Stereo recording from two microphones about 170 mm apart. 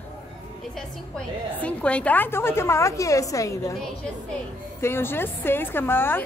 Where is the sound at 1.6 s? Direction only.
10° left (ahead or behind).